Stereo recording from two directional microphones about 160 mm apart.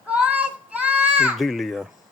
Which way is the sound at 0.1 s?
10° right (ahead or behind).